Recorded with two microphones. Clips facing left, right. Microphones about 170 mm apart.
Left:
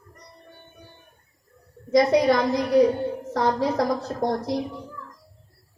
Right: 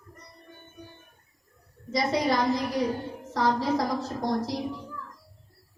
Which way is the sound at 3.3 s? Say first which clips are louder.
Left 2 dB; 60° left (ahead or behind).